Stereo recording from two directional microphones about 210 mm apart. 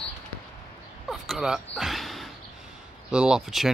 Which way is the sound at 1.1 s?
Centre (ahead or behind).